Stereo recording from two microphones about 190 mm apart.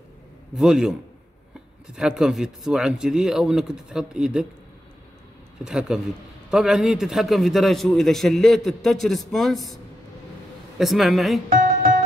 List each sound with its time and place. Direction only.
0.6 s a man's voice: 5° right (ahead or behind)
2.0 s a man's voice: 5° right (ahead or behind)
5.6 s a man's voice: 5° right (ahead or behind)
10.8 s a man's voice: centre (ahead or behind)
11.4 s music: 45° right (ahead or behind)